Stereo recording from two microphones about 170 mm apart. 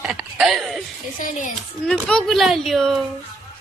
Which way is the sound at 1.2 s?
50° left (ahead or behind).